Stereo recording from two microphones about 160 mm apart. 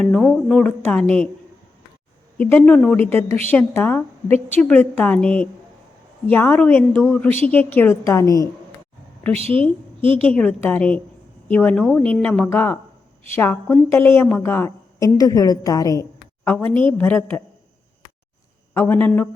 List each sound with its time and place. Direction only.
0.0 s a woman's voice: centre (ahead or behind)
2.4 s a woman's voice: 10° left (ahead or behind)
3.2 s a woman's voice: 40° right (ahead or behind)
3.5 s a woman's voice: 15° left (ahead or behind)
9.3 s a woman's voice: 40° right (ahead or behind)
10.3 s a woman's voice: 10° left (ahead or behind)
18.7 s a woman's voice: 15° left (ahead or behind)